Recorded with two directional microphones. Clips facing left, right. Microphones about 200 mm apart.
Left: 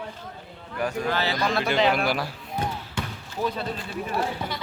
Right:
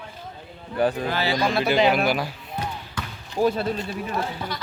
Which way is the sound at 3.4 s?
40° right (ahead or behind).